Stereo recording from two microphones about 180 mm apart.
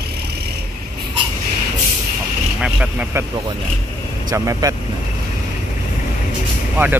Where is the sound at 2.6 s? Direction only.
5° right (ahead or behind).